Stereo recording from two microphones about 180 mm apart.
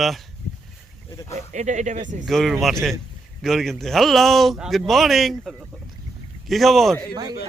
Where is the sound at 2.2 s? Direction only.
Centre (ahead or behind).